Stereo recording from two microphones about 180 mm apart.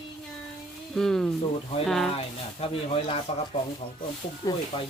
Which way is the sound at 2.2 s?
30° left (ahead or behind).